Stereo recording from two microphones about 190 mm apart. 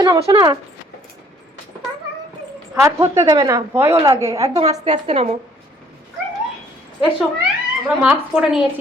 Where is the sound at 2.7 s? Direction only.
15° right (ahead or behind).